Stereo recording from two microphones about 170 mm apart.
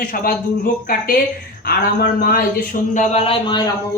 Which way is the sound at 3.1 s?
35° left (ahead or behind).